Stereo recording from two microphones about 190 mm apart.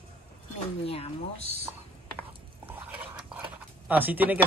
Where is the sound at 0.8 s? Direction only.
30° left (ahead or behind).